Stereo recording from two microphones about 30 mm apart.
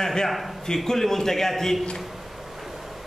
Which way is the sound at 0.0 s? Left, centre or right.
Centre.